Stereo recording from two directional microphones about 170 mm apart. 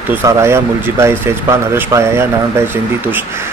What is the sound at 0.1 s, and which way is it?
A man's voice, 15° right (ahead or behind).